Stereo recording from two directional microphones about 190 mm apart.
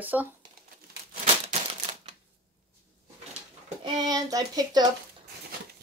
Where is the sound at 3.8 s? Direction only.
20° right (ahead or behind).